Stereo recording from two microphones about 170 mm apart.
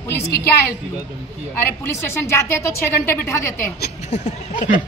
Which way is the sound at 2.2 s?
15° left (ahead or behind).